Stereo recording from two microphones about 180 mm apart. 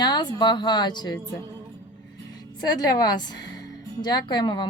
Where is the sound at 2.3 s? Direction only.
20° left (ahead or behind).